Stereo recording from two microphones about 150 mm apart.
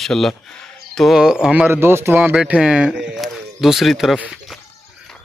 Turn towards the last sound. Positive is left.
turn(degrees=-5)  # may be behind; listen again after turning